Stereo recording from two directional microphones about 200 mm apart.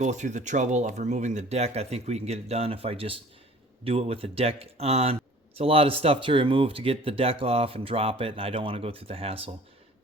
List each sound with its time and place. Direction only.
0.0 s speech: 35° right (ahead or behind)